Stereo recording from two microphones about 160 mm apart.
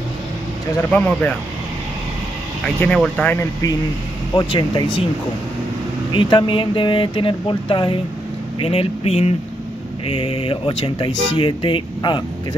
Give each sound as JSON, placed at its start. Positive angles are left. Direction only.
{"t": 0.9, "sound": "speech", "side_deg": 10}
{"t": 2.8, "sound": "speech", "side_deg": 5}
{"t": 4.4, "sound": "speech", "side_deg": 30}
{"t": 6.1, "sound": "speech", "side_deg": 30}